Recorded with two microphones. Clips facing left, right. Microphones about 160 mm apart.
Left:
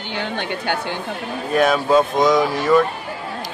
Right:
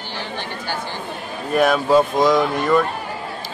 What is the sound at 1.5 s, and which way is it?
Speech, centre (ahead or behind).